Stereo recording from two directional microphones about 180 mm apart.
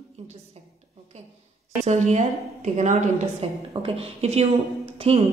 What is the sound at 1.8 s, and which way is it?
A woman's voice, 40° right (ahead or behind).